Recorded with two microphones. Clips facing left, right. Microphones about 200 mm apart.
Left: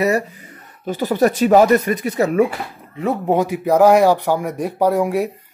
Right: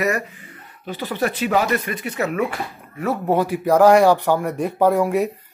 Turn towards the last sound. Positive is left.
turn(degrees=10)  # may be behind; listen again after turning